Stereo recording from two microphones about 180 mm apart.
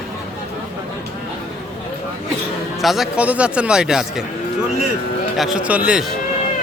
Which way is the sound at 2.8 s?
Centre (ahead or behind).